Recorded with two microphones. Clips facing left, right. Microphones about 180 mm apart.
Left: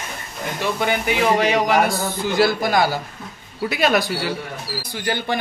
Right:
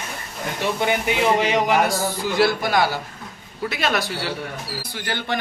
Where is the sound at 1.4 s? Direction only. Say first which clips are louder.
Left 1 dB; 15° right (ahead or behind).